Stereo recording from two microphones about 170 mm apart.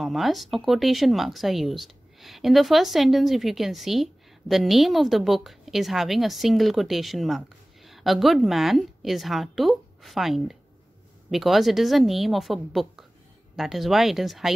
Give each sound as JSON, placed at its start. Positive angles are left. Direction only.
{"t": 0.0, "sound": "speech", "side_deg": 0}